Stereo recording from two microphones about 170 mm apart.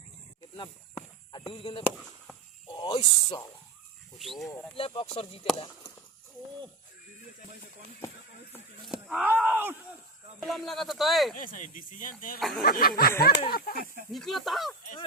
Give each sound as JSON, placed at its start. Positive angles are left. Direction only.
{"t": 0.5, "sound": "a sound", "side_deg": 30}
{"t": 2.6, "sound": "speech", "side_deg": 25}
{"t": 4.2, "sound": "speech", "side_deg": 0}
{"t": 4.8, "sound": "speech", "side_deg": 35}
{"t": 8.9, "sound": "speech", "side_deg": -5}
{"t": 10.4, "sound": "speech", "side_deg": 0}
{"t": 11.3, "sound": "speech", "side_deg": 55}
{"t": 12.4, "sound": "speech", "side_deg": 0}
{"t": 12.6, "sound": "speech", "side_deg": 60}
{"t": 14.1, "sound": "speech", "side_deg": 0}